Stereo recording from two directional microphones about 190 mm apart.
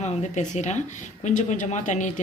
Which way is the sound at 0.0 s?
35° left (ahead or behind).